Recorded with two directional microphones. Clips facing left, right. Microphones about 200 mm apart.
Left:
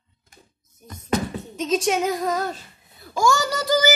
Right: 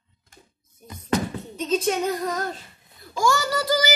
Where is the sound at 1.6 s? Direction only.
90° left.